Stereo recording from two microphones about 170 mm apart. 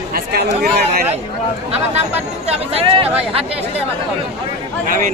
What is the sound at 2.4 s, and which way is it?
Speech, 35° right (ahead or behind).